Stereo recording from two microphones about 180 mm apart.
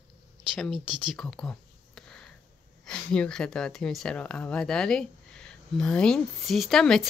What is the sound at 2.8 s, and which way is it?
Speech, 5° left (ahead or behind).